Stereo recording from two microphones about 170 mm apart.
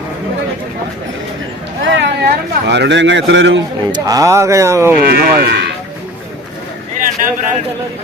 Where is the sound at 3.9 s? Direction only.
20° right (ahead or behind).